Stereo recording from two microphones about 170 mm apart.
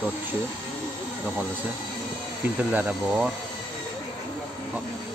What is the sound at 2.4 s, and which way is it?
Speech, 10° right (ahead or behind).